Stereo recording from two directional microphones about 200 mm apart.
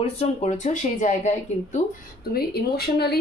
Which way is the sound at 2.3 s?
50° left (ahead or behind).